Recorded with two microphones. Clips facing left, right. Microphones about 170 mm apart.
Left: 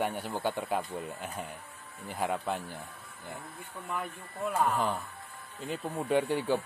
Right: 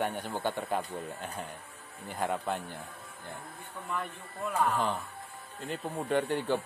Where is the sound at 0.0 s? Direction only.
5° left (ahead or behind).